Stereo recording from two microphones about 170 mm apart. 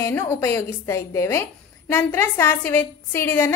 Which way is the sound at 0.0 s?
15° left (ahead or behind).